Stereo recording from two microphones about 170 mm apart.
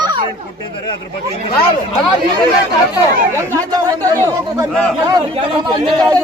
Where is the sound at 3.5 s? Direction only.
20° right (ahead or behind).